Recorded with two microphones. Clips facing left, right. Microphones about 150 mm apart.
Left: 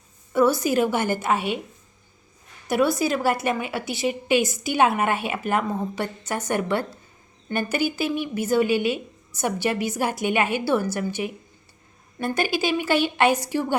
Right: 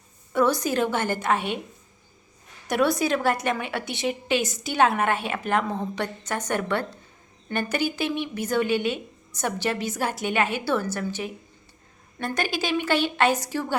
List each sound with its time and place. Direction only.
0.3 s a woman's voice: 5° left (ahead or behind)
2.6 s a woman's voice: 5° left (ahead or behind)
7.9 s a woman's voice: 5° left (ahead or behind)